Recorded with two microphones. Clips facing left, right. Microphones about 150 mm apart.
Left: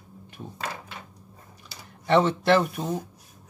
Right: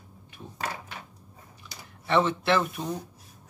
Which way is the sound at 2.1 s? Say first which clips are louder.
Left 4 dB; 40° left (ahead or behind).